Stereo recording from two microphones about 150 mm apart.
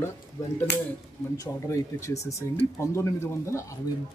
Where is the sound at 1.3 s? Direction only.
20° left (ahead or behind).